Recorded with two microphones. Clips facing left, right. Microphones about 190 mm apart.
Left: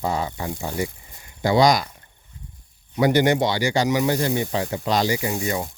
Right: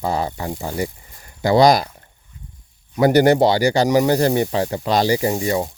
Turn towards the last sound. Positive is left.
turn(degrees=-35)  # may be behind; listen again after turning